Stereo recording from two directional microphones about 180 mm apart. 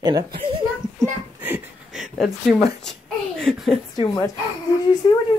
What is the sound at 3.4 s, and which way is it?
Speech, centre (ahead or behind).